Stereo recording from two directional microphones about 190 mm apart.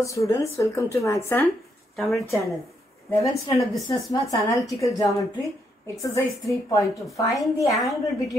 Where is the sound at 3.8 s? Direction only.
20° left (ahead or behind).